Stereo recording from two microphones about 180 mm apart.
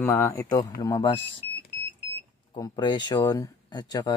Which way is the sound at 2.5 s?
20° left (ahead or behind).